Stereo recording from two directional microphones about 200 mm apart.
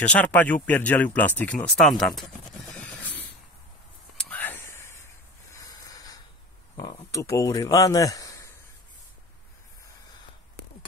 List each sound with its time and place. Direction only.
0.0 s speech: 5° left (ahead or behind)
2.8 s a sound: 10° left (ahead or behind)
4.2 s whispering: 5° left (ahead or behind)
5.6 s hiss: 15° left (ahead or behind)
6.8 s a man's voice: 15° left (ahead or behind)